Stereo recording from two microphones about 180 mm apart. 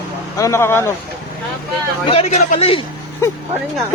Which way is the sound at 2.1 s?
35° left (ahead or behind).